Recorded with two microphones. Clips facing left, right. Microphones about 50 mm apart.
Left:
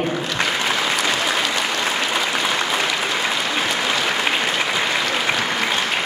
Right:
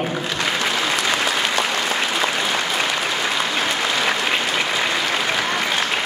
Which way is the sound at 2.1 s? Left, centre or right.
Centre.